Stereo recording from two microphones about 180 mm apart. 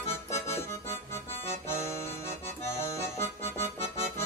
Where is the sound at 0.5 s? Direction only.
15° left (ahead or behind).